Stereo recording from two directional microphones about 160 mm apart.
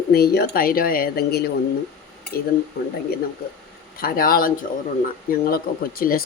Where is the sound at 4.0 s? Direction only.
65° left (ahead or behind).